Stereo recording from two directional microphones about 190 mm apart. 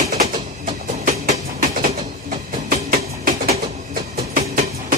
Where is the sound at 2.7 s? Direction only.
45° right (ahead or behind).